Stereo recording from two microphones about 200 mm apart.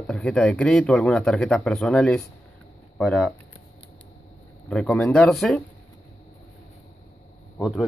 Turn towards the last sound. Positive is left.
turn(degrees=0)  # may be behind; listen again after turning